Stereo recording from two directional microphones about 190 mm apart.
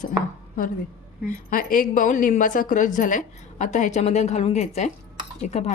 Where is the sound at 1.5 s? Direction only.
45° left (ahead or behind).